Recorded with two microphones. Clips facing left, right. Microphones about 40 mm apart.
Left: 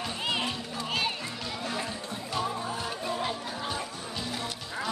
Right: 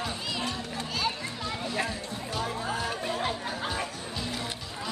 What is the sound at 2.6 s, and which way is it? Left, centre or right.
Music, right.